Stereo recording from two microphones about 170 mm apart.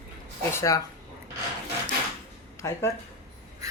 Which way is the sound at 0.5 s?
20° left (ahead or behind).